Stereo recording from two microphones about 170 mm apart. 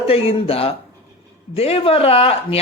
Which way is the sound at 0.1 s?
35° left (ahead or behind).